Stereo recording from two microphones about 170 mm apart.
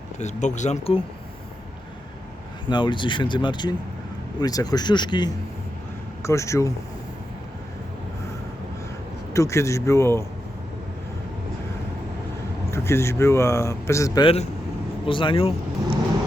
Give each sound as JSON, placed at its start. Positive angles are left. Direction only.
{"t": 0.2, "sound": "speech", "side_deg": 45}
{"t": 2.6, "sound": "speech", "side_deg": 30}
{"t": 9.3, "sound": "speech", "side_deg": 15}
{"t": 12.7, "sound": "speech", "side_deg": 15}
{"t": 15.0, "sound": "speech", "side_deg": 30}